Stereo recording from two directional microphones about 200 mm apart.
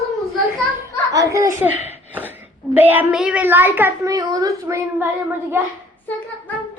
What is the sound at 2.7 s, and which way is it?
A woman's voice, 10° right (ahead or behind).